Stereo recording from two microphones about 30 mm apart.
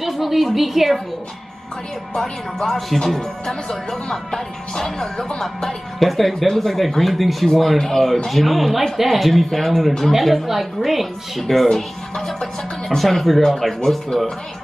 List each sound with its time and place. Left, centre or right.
0.0 s speech: centre
2.1 s speech: centre
5.9 s speech: centre
7.7 s speech: centre
8.3 s speech: centre
14.1 s speech: centre